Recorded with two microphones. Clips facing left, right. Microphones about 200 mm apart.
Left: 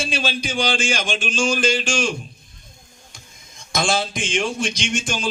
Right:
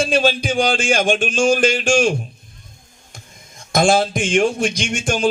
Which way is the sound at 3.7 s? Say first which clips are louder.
Right 7 dB; 55° right (ahead or behind).